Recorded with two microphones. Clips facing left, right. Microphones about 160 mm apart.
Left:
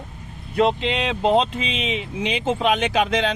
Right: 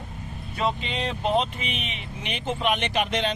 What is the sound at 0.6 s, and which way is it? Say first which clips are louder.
Speech: left 8 dB; 80° left.